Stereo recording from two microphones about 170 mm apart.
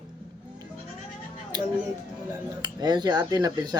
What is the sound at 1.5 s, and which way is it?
Music, 25° right (ahead or behind).